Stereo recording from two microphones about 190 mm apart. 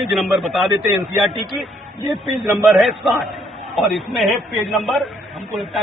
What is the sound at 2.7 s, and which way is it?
Speech, centre (ahead or behind).